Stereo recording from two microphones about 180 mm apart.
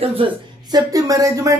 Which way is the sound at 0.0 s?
30° right (ahead or behind).